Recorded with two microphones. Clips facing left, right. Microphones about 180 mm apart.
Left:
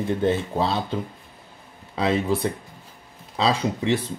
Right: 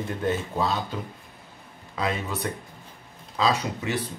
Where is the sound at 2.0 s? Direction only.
30° left (ahead or behind).